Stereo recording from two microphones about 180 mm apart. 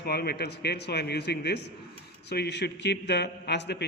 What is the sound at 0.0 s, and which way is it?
A man's voice, 65° left (ahead or behind).